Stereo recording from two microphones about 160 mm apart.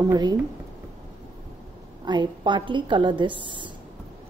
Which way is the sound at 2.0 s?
30° right (ahead or behind).